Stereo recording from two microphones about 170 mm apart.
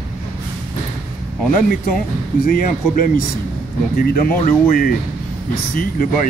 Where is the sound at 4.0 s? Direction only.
60° left (ahead or behind).